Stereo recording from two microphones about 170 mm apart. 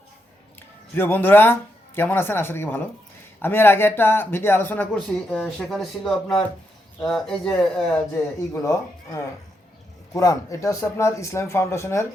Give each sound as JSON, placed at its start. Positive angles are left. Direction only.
{"t": 0.9, "sound": "speech", "side_deg": 10}
{"t": 8.6, "sound": "speech", "side_deg": 20}